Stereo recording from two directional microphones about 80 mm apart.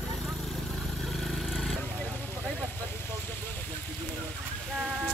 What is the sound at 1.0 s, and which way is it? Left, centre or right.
Vehicle, centre.